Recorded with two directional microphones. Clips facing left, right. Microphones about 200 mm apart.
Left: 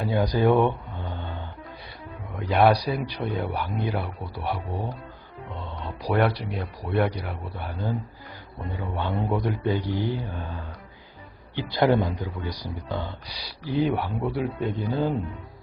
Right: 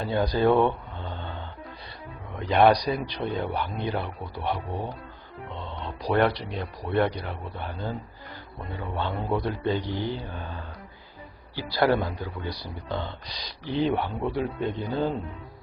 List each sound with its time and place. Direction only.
0.0 s speech: 10° left (ahead or behind)
2.5 s speech: 5° left (ahead or behind)
6.0 s speech: 10° left (ahead or behind)
11.5 s speech: 20° left (ahead or behind)